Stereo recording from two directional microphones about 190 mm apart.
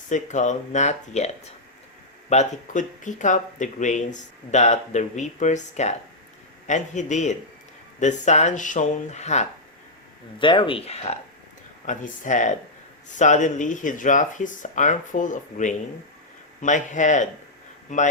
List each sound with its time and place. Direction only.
0.1 s speech: 40° left (ahead or behind)
2.3 s speech: 40° left (ahead or behind)
10.3 s speech: 25° left (ahead or behind); by 18.0 s 40° left (ahead or behind)